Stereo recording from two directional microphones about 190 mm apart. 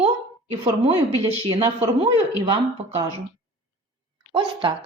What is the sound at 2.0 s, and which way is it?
Speech, 30° right (ahead or behind).